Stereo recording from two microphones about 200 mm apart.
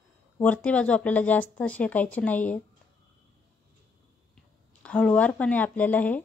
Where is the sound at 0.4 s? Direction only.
5° left (ahead or behind).